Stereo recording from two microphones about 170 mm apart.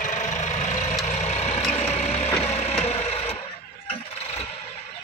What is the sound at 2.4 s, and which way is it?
Wood, 40° left (ahead or behind).